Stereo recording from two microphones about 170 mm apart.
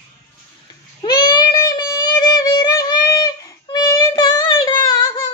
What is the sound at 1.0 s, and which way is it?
Child singing, 25° left (ahead or behind).